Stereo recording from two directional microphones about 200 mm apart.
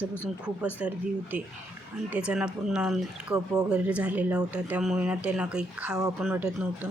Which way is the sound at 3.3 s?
15° right (ahead or behind).